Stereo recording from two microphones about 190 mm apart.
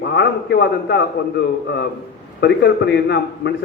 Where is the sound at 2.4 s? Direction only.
65° left (ahead or behind).